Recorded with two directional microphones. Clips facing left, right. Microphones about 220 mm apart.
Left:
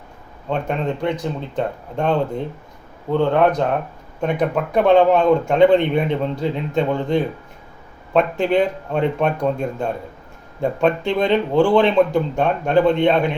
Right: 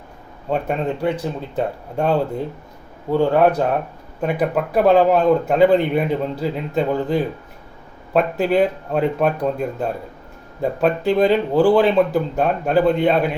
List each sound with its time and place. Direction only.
0.5 s a man's voice: 5° right (ahead or behind)